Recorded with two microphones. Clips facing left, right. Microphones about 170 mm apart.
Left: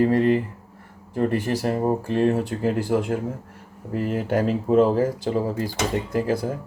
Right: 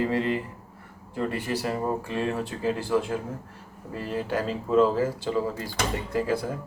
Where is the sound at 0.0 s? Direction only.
45° left (ahead or behind).